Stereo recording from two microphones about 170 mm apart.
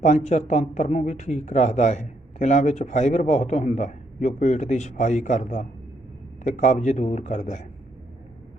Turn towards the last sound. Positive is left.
turn(degrees=45)  # may be behind; listen again after turning